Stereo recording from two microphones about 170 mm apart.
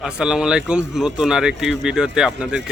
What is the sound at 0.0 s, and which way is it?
Speech, 5° right (ahead or behind).